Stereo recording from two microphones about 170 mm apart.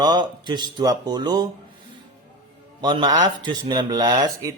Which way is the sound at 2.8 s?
25° right (ahead or behind).